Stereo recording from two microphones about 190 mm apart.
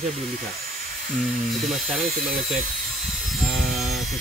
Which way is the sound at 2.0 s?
45° right (ahead or behind).